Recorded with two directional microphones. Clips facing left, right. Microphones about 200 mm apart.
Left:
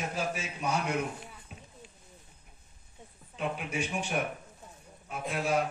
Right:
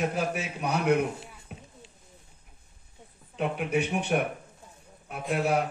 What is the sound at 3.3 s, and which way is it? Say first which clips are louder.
Speech: right 6 dB; 65° right (ahead or behind).